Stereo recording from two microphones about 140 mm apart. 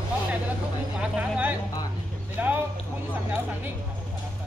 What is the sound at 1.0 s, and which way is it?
Vehicle, 10° right (ahead or behind).